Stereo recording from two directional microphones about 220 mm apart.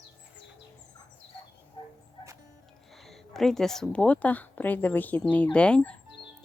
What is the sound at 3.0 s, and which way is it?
Speech, centre (ahead or behind).